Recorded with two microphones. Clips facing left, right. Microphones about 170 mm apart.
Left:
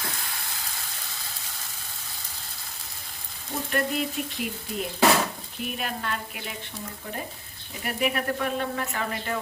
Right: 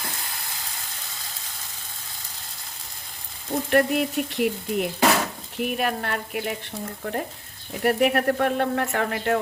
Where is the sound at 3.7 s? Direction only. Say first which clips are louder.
Right 7 dB; 60° right (ahead or behind).